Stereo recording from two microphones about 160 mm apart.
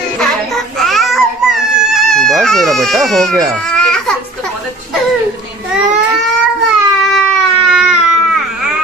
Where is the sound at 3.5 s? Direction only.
5° left (ahead or behind).